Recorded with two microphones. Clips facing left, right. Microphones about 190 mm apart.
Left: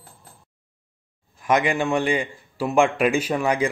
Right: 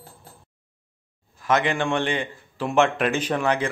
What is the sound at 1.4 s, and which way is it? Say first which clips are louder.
A man's voice: left 1 dB; 10° left (ahead or behind).